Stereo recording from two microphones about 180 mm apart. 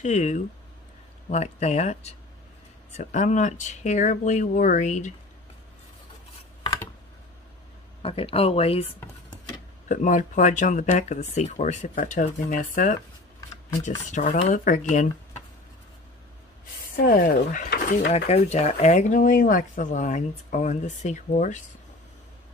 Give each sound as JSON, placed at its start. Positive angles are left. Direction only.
{"t": 0.0, "sound": "speech", "side_deg": 40}
{"t": 8.0, "sound": "speech", "side_deg": 30}
{"t": 9.8, "sound": "speech", "side_deg": 45}
{"t": 14.1, "sound": "speech", "side_deg": 45}
{"t": 16.9, "sound": "speech", "side_deg": 55}